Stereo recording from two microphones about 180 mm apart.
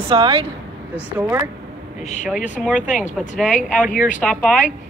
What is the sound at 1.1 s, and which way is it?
Speech, 10° right (ahead or behind).